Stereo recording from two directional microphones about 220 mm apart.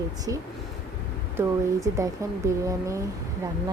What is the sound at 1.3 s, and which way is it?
A woman's voice, 15° right (ahead or behind).